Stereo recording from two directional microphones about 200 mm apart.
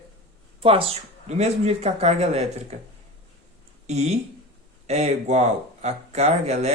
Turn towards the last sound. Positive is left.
turn(degrees=-35)  # may be behind; listen again after turning